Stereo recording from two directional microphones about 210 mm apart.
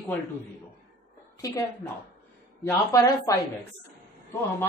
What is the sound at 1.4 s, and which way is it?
Speech, 15° left (ahead or behind).